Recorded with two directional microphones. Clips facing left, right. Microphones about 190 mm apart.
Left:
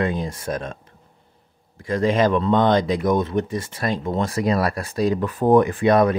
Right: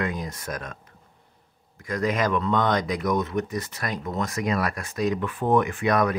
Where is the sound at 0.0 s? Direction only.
30° left (ahead or behind).